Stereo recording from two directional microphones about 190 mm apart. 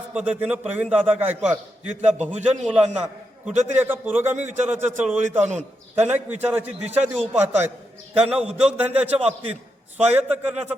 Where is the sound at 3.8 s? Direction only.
10° right (ahead or behind).